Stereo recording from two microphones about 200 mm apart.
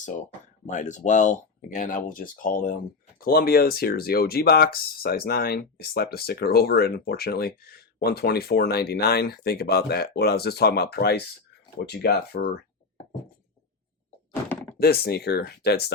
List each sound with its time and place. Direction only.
0.0 s speech: 40° left (ahead or behind)
14.8 s speech: 50° left (ahead or behind)